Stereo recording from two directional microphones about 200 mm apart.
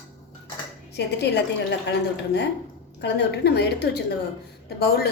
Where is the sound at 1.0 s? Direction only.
55° left (ahead or behind).